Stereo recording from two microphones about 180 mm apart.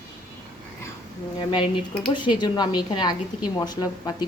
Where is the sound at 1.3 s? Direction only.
30° left (ahead or behind).